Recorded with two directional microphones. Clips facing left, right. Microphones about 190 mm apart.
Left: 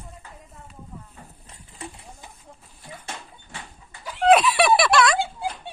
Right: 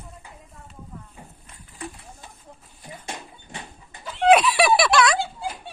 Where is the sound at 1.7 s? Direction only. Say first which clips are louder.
Right 2 dB; 25° left (ahead or behind).